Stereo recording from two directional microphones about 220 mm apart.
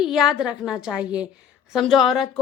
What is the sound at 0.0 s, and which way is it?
A woman's voice, centre (ahead or behind).